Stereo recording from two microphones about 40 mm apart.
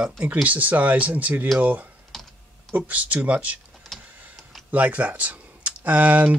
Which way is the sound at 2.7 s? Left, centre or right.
Right.